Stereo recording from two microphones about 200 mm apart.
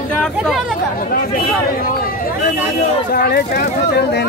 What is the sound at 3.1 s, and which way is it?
Speech, 50° left (ahead or behind).